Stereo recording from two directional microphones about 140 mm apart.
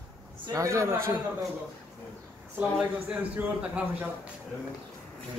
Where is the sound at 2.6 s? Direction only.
5° right (ahead or behind).